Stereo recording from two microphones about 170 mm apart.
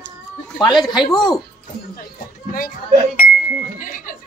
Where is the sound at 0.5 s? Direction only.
25° left (ahead or behind).